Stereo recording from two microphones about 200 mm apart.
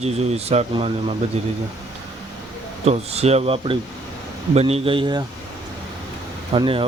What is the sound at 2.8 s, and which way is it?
Speech, 30° right (ahead or behind).